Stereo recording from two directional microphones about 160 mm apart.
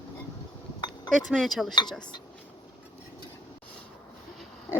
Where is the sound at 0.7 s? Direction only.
25° left (ahead or behind).